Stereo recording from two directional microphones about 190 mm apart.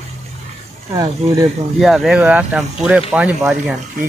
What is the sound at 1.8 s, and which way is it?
Speech, centre (ahead or behind).